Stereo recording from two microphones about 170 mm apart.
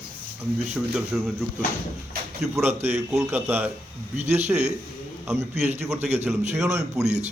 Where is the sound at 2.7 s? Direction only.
40° right (ahead or behind).